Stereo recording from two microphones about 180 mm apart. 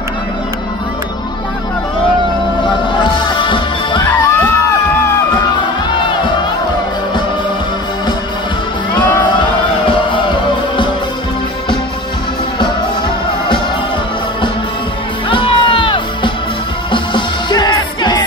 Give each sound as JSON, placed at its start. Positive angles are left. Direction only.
{"t": 2.6, "sound": "music", "side_deg": 25}
{"t": 15.2, "sound": "music", "side_deg": 30}